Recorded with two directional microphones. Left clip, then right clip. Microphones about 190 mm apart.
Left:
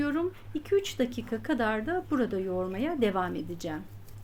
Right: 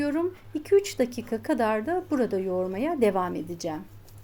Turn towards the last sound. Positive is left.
turn(degrees=-5)  # may be behind; listen again after turning